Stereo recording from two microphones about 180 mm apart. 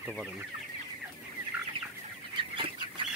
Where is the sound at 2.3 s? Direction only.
30° right (ahead or behind).